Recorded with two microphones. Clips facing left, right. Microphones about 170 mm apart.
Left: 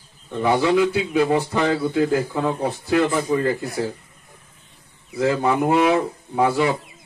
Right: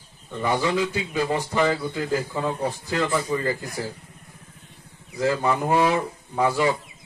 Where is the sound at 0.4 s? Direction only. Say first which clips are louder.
Left 6 dB; 65° left (ahead or behind).